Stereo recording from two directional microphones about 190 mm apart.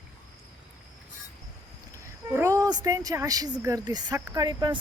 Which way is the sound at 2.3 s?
15° right (ahead or behind).